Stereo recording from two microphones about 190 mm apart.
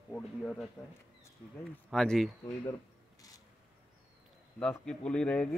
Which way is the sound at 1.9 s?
Centre (ahead or behind).